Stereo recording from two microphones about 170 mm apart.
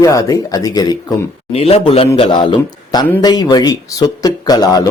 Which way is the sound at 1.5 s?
35° left (ahead or behind).